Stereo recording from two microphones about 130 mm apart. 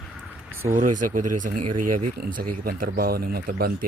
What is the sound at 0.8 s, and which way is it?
Speech, 80° right.